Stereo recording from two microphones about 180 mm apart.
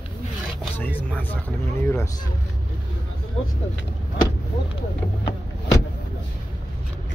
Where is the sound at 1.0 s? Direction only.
10° left (ahead or behind).